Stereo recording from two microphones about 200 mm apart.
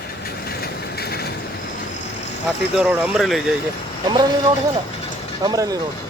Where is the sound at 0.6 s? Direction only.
50° left (ahead or behind).